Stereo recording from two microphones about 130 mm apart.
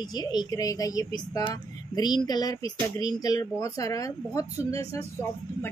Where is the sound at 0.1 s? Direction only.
30° left (ahead or behind).